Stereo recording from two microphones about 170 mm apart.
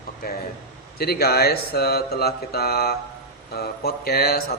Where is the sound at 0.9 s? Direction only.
65° left (ahead or behind).